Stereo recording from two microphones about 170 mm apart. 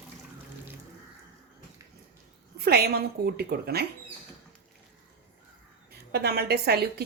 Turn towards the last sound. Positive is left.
turn(degrees=-70)  # may be behind; listen again after turning